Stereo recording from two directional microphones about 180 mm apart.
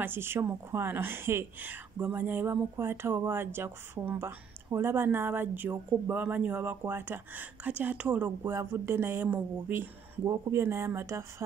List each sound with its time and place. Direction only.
0.0 s speech: 10° right (ahead or behind)